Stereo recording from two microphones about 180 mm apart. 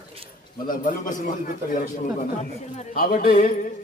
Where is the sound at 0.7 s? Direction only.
45° left (ahead or behind).